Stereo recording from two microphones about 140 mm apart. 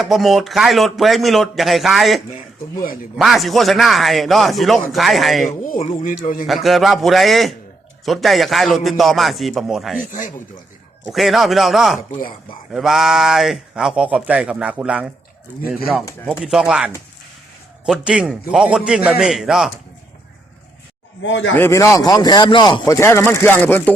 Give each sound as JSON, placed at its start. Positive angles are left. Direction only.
{"t": 0.0, "sound": "speech", "side_deg": 0}
{"t": 5.6, "sound": "speech", "side_deg": 65}
{"t": 6.5, "sound": "speech", "side_deg": 0}
{"t": 10.1, "sound": "speech", "side_deg": 65}
{"t": 11.0, "sound": "speech", "side_deg": 0}
{"t": 16.4, "sound": "speech", "side_deg": -5}
{"t": 18.0, "sound": "speech", "side_deg": -5}
{"t": 21.5, "sound": "speech", "side_deg": 20}